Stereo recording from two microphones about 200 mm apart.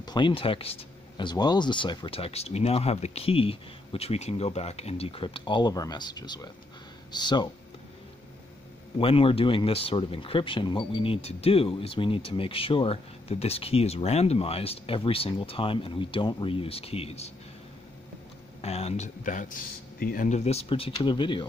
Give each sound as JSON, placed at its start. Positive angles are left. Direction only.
{"t": 0.0, "sound": "speech", "side_deg": 20}
{"t": 8.9, "sound": "speech", "side_deg": 30}
{"t": 18.6, "sound": "speech", "side_deg": 30}